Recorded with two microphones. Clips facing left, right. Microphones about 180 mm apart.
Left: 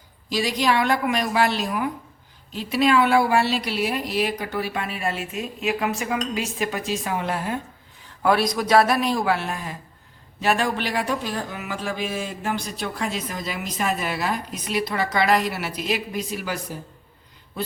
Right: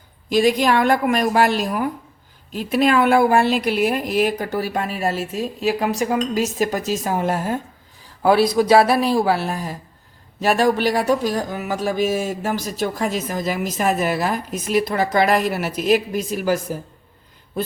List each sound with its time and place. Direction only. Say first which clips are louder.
0.3 s speech: right 6 dB; 50° right (ahead or behind)
8.2 s speech: right 5 dB; 30° right (ahead or behind); by 16.7 s 45° right (ahead or behind)